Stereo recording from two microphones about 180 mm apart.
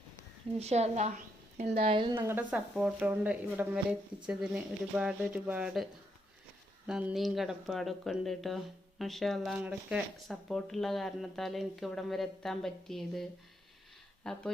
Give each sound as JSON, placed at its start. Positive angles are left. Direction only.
{"t": 0.6, "sound": "a woman's voice", "side_deg": -40}
{"t": 1.8, "sound": "speech", "side_deg": -30}
{"t": 2.1, "sound": "speech", "side_deg": -10}
{"t": 6.8, "sound": "speech", "side_deg": -5}
{"t": 14.3, "sound": "speech", "side_deg": 5}